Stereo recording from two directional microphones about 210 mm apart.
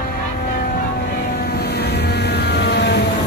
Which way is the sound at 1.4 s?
50° left (ahead or behind).